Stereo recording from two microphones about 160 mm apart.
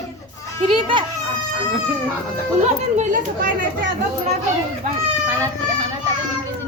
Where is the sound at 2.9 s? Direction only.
55° right (ahead or behind).